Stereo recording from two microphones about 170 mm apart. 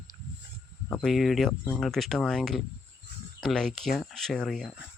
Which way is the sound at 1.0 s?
Centre (ahead or behind).